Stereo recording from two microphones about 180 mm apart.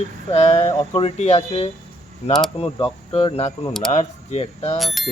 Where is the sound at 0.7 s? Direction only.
20° left (ahead or behind).